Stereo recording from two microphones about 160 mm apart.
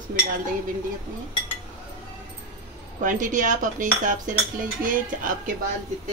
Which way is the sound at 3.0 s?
55° right (ahead or behind).